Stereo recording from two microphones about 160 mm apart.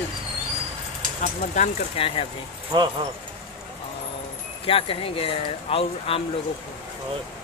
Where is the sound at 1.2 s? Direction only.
50° left (ahead or behind).